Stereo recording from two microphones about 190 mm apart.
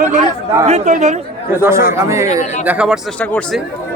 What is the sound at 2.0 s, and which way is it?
Speech, 15° right (ahead or behind).